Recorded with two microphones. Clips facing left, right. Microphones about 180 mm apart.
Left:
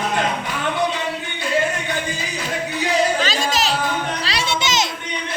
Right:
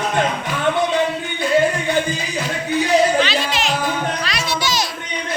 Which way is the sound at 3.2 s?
40° left (ahead or behind).